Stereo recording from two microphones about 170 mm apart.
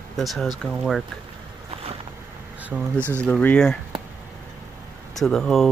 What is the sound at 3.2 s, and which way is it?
Speech, 5° left (ahead or behind).